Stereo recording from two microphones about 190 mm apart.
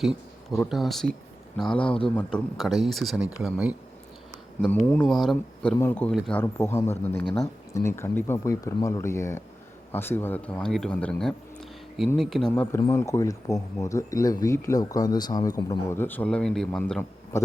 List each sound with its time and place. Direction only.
0.0 s speech: centre (ahead or behind)
1.7 s speech: 30° left (ahead or behind)
2.0 s speech: 5° left (ahead or behind)
4.9 s speech: 5° left (ahead or behind)
5.7 s speech: 10° left (ahead or behind)